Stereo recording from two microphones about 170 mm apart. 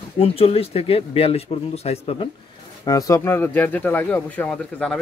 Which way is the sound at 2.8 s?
20° left (ahead or behind).